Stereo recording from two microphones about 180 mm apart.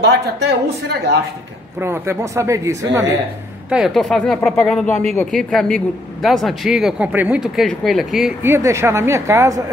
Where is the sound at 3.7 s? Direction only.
5° right (ahead or behind).